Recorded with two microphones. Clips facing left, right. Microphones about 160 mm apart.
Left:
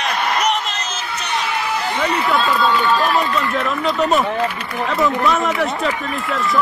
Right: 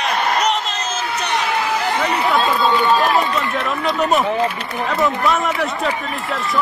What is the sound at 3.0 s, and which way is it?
Speech, 40° right (ahead or behind).